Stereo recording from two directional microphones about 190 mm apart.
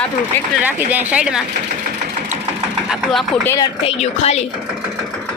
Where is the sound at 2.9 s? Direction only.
Centre (ahead or behind).